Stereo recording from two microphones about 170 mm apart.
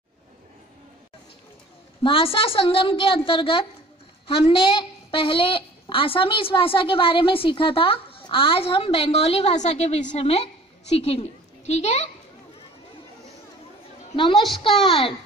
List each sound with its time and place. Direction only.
2.0 s a woman's voice: 30° left (ahead or behind)
14.1 s a woman's voice: 30° left (ahead or behind)